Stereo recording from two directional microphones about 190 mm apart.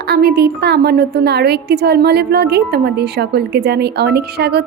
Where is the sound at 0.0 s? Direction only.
55° right (ahead or behind).